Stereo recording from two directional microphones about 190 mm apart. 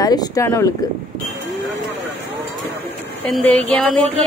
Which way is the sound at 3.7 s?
5° left (ahead or behind).